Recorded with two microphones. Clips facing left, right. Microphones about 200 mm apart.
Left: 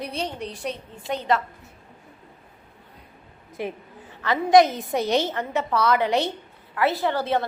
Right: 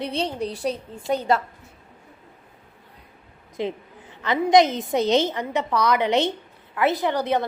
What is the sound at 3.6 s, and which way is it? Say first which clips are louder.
A woman's voice: right 3 dB; 20° right (ahead or behind).